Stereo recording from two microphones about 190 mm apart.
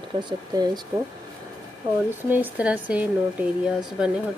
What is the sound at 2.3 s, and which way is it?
Speech, 10° right (ahead or behind).